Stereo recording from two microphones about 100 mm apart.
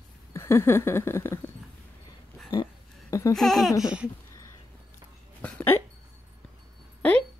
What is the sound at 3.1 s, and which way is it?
Speech, 35° left (ahead or behind).